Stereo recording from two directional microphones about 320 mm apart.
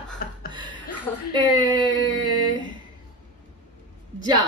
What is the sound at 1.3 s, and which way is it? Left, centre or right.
Speech, centre.